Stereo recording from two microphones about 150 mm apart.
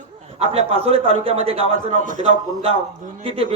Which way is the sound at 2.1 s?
55° right (ahead or behind).